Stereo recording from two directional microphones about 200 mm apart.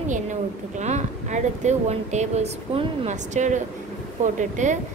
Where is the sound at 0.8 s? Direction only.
35° right (ahead or behind).